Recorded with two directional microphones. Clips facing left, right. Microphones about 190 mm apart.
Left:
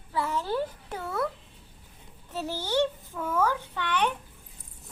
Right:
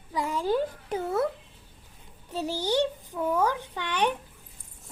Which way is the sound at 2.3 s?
15° right (ahead or behind).